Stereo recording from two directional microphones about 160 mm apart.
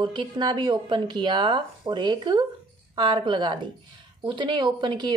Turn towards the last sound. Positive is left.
turn(degrees=-30)  # may be behind; listen again after turning